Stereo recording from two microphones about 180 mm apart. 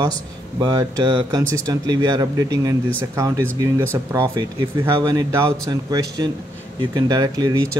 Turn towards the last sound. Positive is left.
turn(degrees=-20)  # may be behind; listen again after turning